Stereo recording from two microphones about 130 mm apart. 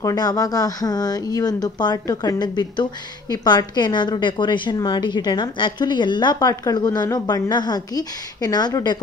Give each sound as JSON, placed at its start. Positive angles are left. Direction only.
{"t": 0.0, "sound": "speech", "side_deg": 30}